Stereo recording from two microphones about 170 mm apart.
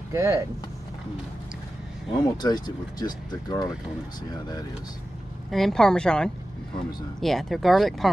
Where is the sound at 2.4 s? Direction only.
25° left (ahead or behind).